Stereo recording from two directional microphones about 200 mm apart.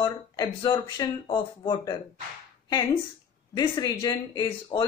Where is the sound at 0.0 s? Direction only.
20° left (ahead or behind).